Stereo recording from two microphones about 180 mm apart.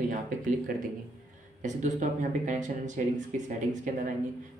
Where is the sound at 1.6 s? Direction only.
45° right (ahead or behind).